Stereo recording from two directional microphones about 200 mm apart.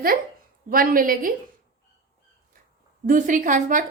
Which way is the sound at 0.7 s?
45° right (ahead or behind).